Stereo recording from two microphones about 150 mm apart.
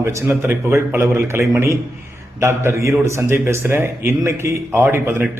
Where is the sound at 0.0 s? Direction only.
20° right (ahead or behind).